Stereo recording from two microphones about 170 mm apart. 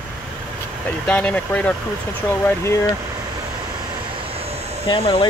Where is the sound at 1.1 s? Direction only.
5° left (ahead or behind).